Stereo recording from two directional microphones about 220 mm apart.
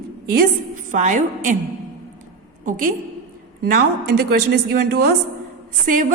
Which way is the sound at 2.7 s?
35° right (ahead or behind).